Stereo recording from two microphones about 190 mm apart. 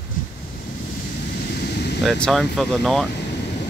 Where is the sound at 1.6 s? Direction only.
60° left (ahead or behind).